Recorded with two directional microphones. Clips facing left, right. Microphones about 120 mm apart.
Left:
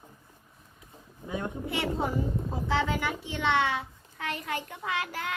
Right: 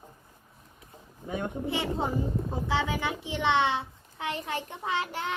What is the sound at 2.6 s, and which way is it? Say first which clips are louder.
A child's voice: left 2 dB; 20° right (ahead or behind).